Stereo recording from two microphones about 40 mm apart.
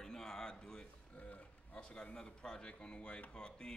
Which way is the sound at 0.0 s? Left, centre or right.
Centre.